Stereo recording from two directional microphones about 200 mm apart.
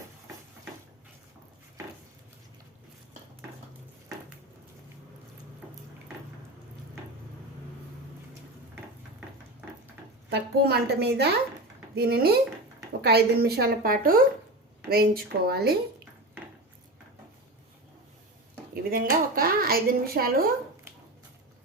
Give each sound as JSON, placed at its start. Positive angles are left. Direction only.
{"t": 10.2, "sound": "speech", "side_deg": -55}
{"t": 18.7, "sound": "speech", "side_deg": -50}